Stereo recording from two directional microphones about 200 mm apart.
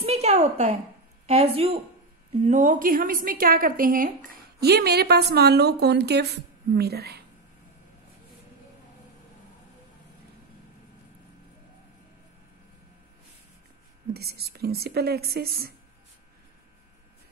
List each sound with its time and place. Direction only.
0.0 s a sound: 30° right (ahead or behind)
1.2 s a woman's voice: 30° right (ahead or behind); by 7.2 s 50° right (ahead or behind)
14.1 s a woman's voice: 55° right (ahead or behind)